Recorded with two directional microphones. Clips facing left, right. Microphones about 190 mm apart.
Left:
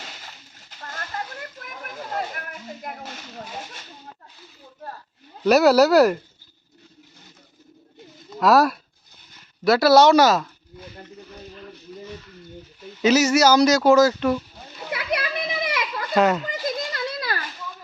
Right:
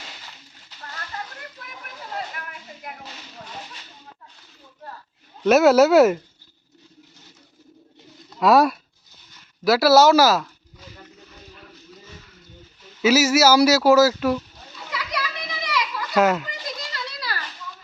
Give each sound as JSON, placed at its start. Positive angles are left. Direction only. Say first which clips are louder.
{"t": 0.7, "sound": "a sound", "louder": "left 2 dB", "side_deg": 50}
{"t": 1.5, "sound": "whip", "louder": "left 5 dB", "side_deg": 50}
{"t": 5.4, "sound": "speech", "louder": "right 1 dB", "side_deg": 0}
{"t": 8.4, "sound": "speech", "louder": "right 1 dB", "side_deg": 0}
{"t": 13.0, "sound": "speech", "louder": "even", "side_deg": -5}
{"t": 14.8, "sound": "children playing", "louder": "left 4 dB", "side_deg": 55}
{"t": 16.1, "sound": "speech", "louder": "even", "side_deg": 0}
{"t": 16.5, "sound": "a sound", "louder": "left 7 dB", "side_deg": 50}